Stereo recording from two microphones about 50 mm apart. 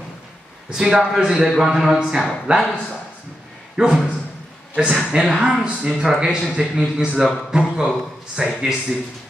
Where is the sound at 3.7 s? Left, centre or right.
Centre.